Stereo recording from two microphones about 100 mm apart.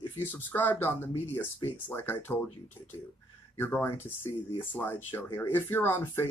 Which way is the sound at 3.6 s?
20° left (ahead or behind).